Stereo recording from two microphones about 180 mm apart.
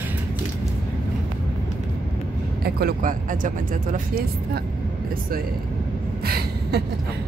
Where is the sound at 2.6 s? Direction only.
60° right (ahead or behind).